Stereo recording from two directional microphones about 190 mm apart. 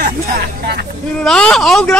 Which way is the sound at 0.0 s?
55° right (ahead or behind).